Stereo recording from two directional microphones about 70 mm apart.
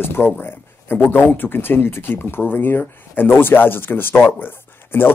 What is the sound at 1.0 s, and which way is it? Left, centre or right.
Speech, left.